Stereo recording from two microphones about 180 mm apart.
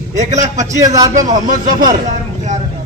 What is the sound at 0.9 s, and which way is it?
Speech, 20° right (ahead or behind).